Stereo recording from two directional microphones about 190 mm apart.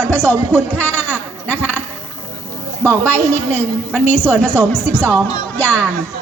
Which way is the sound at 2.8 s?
10° left (ahead or behind).